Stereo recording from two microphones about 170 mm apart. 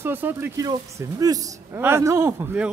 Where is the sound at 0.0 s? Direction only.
10° right (ahead or behind).